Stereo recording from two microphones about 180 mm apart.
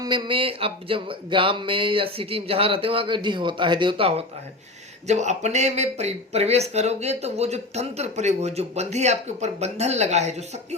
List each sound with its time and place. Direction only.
0.0 s speech: 25° right (ahead or behind)
5.0 s speech: 40° right (ahead or behind)